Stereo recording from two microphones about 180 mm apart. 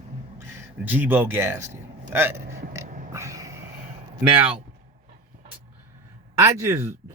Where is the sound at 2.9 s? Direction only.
45° right (ahead or behind).